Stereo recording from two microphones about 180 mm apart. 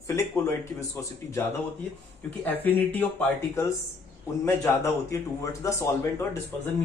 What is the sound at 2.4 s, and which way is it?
Speech, 10° left (ahead or behind).